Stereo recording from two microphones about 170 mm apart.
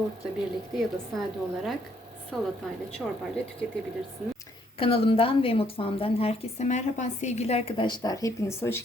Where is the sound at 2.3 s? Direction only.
Centre (ahead or behind).